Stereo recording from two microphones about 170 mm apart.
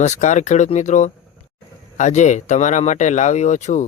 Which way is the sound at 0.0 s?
45° left (ahead or behind).